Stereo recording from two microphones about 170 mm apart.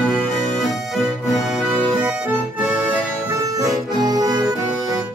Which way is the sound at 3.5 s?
20° right (ahead or behind).